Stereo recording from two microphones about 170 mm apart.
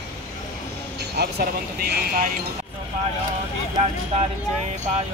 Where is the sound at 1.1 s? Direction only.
70° right (ahead or behind).